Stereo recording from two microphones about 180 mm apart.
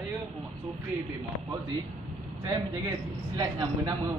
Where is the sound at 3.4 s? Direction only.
20° right (ahead or behind).